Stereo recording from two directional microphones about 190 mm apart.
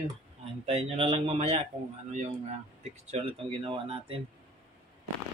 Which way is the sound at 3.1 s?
30° right (ahead or behind).